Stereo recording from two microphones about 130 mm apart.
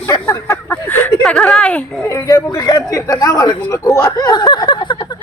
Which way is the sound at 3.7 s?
25° left (ahead or behind).